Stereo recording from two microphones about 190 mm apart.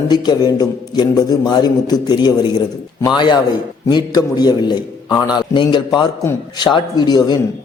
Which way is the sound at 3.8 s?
20° left (ahead or behind).